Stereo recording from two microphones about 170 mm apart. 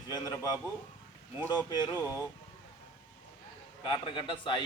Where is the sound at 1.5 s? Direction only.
25° left (ahead or behind).